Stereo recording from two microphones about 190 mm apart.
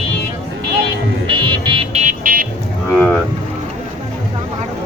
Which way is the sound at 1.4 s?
25° right (ahead or behind).